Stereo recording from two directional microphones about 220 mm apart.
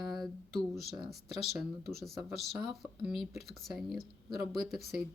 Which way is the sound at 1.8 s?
45° right (ahead or behind).